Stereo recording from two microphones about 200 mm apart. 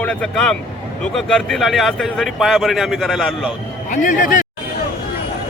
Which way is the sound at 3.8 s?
40° left (ahead or behind).